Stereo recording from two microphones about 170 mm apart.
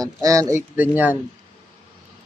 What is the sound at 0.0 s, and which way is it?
Speech, 20° right (ahead or behind).